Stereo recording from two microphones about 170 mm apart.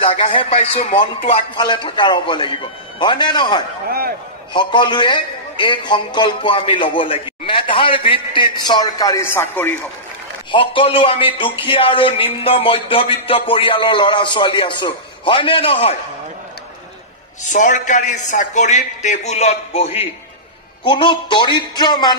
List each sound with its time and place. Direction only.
0.0 s a man's voice: 30° left (ahead or behind); by 9.8 s 15° left (ahead or behind)
10.5 s a man's voice: 30° left (ahead or behind)
17.4 s a man's voice: 45° left (ahead or behind); by 22.1 s 25° left (ahead or behind)